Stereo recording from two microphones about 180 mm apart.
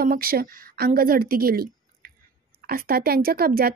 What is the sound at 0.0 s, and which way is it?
A woman's voice, 55° right (ahead or behind).